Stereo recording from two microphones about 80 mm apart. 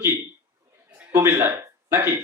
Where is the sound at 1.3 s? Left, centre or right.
Right.